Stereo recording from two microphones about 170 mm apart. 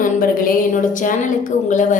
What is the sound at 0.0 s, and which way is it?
A woman's voice, 55° left (ahead or behind).